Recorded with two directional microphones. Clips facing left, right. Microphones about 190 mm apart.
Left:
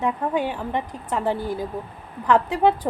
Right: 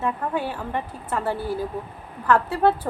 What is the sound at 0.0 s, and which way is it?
A woman's voice, 15° left (ahead or behind).